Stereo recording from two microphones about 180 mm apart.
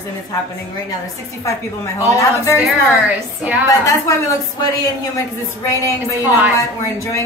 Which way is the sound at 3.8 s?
20° left (ahead or behind).